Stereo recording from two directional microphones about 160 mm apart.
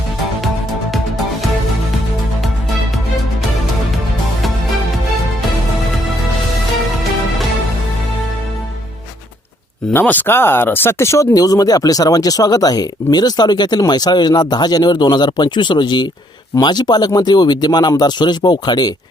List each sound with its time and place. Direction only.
9.9 s speech: 10° left (ahead or behind)